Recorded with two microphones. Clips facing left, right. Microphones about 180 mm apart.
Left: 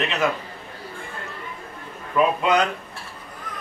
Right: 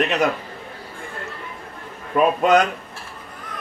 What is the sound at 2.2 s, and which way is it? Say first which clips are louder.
Speech: right 2 dB; 55° right (ahead or behind).